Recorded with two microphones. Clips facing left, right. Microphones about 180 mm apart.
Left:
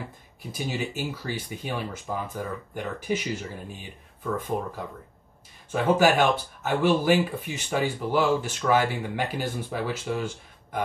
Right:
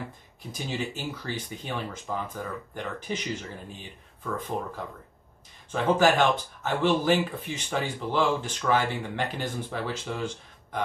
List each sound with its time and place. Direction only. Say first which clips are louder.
0.5 s speech: left 2 dB; 5° left (ahead or behind)
5.7 s speech: left 1 dB; 10° left (ahead or behind)